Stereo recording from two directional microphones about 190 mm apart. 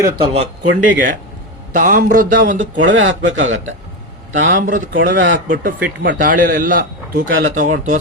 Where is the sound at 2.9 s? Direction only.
85° right.